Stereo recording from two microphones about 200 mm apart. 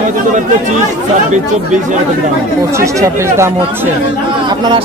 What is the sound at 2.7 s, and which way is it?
Speech, 15° right (ahead or behind).